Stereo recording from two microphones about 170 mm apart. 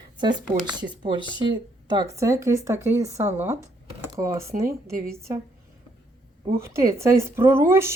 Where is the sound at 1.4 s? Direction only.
25° right (ahead or behind).